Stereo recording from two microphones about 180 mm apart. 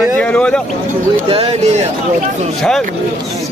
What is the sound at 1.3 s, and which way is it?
Speech, 35° right (ahead or behind).